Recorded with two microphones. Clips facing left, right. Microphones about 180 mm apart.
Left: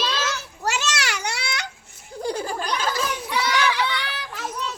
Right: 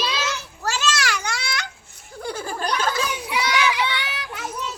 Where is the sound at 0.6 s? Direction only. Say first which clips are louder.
Right 2 dB; 20° left (ahead or behind).